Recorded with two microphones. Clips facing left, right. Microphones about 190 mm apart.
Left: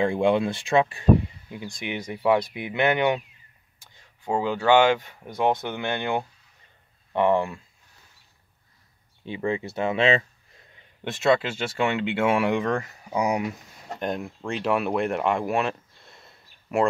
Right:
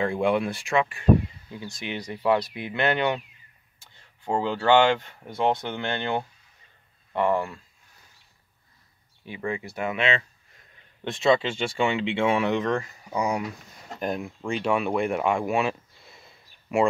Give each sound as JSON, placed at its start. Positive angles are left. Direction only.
{"t": 0.0, "sound": "speech", "side_deg": 20}
{"t": 0.7, "sound": "speech", "side_deg": 30}
{"t": 1.8, "sound": "speech", "side_deg": 15}
{"t": 9.2, "sound": "speech", "side_deg": 25}
{"t": 11.1, "sound": "speech", "side_deg": 5}
{"t": 13.9, "sound": "speech", "side_deg": 0}